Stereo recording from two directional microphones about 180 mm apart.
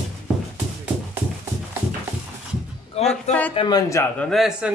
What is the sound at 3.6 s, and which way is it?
Speech, 20° left (ahead or behind).